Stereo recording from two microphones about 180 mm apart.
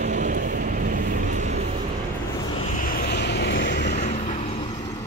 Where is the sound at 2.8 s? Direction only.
55° left (ahead or behind); by 3.9 s 75° left (ahead or behind).